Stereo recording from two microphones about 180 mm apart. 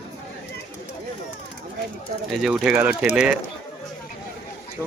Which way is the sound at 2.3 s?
Centre (ahead or behind).